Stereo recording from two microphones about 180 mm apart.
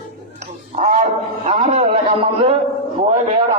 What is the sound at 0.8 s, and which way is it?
Roaring cats, 45° right (ahead or behind).